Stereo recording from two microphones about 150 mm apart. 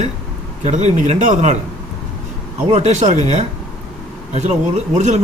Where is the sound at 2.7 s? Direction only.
50° right (ahead or behind).